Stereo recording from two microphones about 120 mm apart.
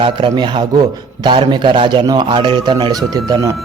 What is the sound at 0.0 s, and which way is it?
A man's voice, 40° right (ahead or behind).